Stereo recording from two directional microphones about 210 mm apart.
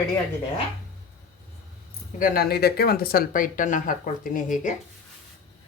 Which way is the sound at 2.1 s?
45° left (ahead or behind).